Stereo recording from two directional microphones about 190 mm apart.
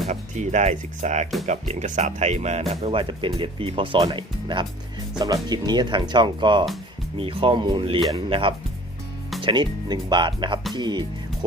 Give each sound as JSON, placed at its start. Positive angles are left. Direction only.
{"t": 0.1, "sound": "speech", "side_deg": -40}